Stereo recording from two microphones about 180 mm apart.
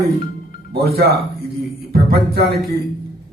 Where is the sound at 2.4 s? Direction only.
60° right (ahead or behind).